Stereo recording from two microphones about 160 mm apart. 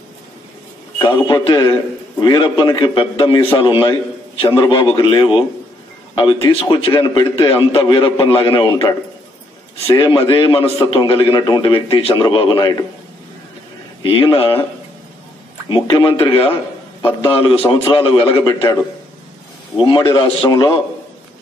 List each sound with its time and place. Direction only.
0.9 s a man's voice: 30° left (ahead or behind)
9.9 s a man's voice: 30° left (ahead or behind)
14.0 s a man's voice: 35° left (ahead or behind)
15.7 s a man's voice: 30° left (ahead or behind)
19.8 s a man's voice: 30° left (ahead or behind)